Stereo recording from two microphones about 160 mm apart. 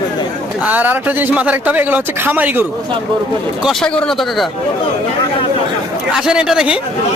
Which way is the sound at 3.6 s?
Centre (ahead or behind).